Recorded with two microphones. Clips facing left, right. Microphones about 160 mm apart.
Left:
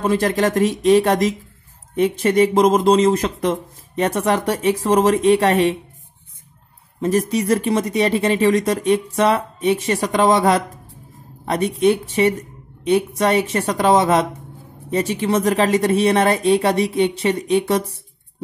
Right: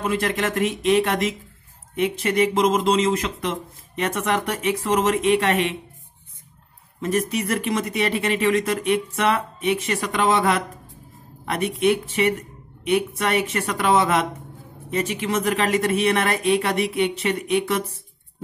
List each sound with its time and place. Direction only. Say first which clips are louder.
0.0 s speech: left 6 dB; 35° left (ahead or behind)
7.0 s a woman's voice: left 5 dB; 35° left (ahead or behind)